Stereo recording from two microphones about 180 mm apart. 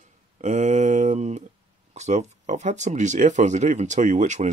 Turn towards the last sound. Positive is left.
turn(degrees=-40)  # may be behind; listen again after turning